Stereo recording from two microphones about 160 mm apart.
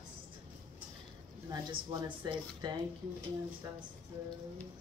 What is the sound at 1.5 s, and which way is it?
Speech, 25° right (ahead or behind).